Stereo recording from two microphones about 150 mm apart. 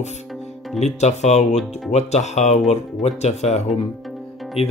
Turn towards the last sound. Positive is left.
turn(degrees=40)  # may be behind; listen again after turning